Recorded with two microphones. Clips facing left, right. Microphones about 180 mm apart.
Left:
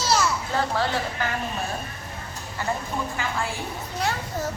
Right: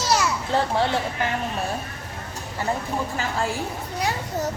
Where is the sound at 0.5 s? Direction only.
25° right (ahead or behind).